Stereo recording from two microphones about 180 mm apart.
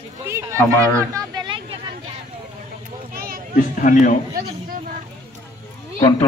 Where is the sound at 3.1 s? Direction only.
55° right (ahead or behind).